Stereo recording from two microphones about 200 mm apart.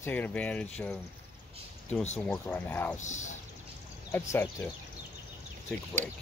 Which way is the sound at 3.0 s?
35° left (ahead or behind).